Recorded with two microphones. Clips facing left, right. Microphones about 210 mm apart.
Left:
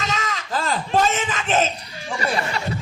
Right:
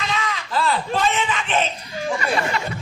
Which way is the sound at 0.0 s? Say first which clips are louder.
Right 1 dB; 45° left (ahead or behind).